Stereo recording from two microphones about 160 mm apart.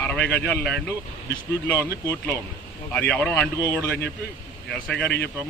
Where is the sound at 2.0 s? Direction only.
15° left (ahead or behind).